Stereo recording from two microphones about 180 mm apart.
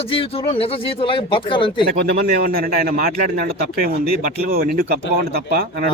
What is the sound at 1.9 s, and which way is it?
A man's voice, 55° right (ahead or behind).